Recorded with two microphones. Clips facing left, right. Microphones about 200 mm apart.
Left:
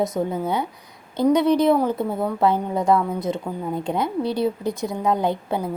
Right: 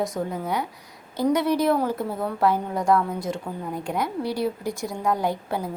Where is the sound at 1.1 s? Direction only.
20° left (ahead or behind).